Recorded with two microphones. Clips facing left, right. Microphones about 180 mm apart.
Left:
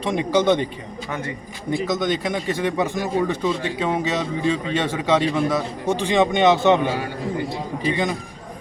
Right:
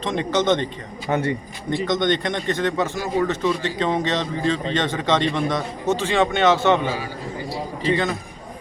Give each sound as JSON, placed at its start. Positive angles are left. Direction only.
{"t": 0.0, "sound": "speech", "side_deg": 10}
{"t": 1.1, "sound": "a man's voice", "side_deg": -35}
{"t": 1.8, "sound": "speech", "side_deg": 5}
{"t": 7.9, "sound": "speech", "side_deg": 15}